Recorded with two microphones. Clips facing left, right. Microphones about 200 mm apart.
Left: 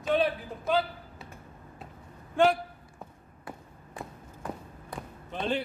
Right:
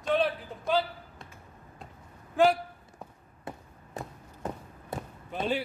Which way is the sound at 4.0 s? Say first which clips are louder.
Right 2 dB; 40° right (ahead or behind).